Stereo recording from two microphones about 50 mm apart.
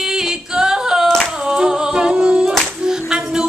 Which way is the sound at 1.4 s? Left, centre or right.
Centre.